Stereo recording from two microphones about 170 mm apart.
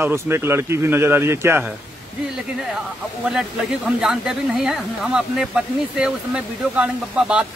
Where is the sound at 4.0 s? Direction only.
5° right (ahead or behind).